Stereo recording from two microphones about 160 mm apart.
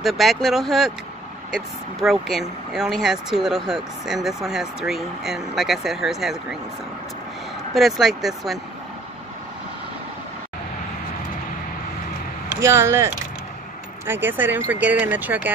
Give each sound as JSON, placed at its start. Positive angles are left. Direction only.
{"t": 0.0, "sound": "speech", "side_deg": 0}
{"t": 7.7, "sound": "speech", "side_deg": 0}
{"t": 12.5, "sound": "speech", "side_deg": -15}